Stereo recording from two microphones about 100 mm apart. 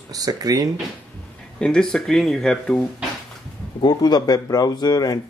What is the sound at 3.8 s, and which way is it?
Speech, 45° left (ahead or behind).